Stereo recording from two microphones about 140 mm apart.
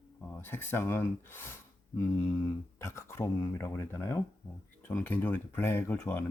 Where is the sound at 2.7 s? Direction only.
20° left (ahead or behind).